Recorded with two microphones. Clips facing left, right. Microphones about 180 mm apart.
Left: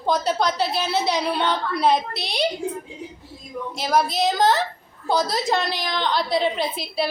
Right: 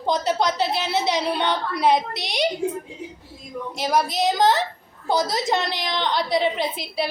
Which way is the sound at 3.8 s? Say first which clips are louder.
Left 1 dB; 15° right (ahead or behind).